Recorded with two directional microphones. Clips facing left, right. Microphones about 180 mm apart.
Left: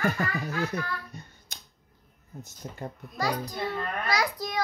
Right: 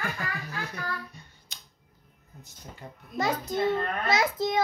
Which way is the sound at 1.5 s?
50° left (ahead or behind).